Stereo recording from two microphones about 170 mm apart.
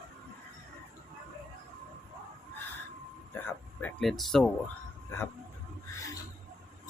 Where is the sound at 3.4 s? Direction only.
5° left (ahead or behind).